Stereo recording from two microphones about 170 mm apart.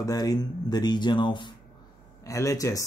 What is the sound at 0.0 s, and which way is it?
Speech, 20° left (ahead or behind).